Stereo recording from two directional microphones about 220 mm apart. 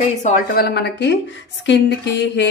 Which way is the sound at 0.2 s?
40° left (ahead or behind).